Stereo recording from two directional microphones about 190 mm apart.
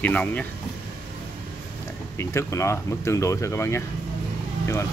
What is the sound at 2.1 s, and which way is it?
Speech, 15° left (ahead or behind).